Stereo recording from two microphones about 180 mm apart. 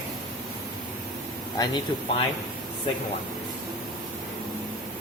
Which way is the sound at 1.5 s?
25° left (ahead or behind).